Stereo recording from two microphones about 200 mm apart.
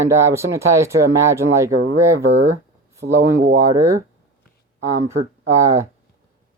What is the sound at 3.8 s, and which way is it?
Speech, 15° right (ahead or behind).